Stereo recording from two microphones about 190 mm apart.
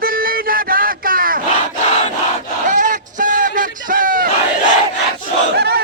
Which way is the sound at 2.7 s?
45° right (ahead or behind).